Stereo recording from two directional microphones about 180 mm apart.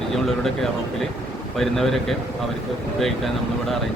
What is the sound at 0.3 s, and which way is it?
Speech, centre (ahead or behind).